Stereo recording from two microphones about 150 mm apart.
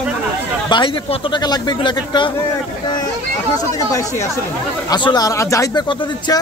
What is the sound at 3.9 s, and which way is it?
A man's voice, 20° left (ahead or behind).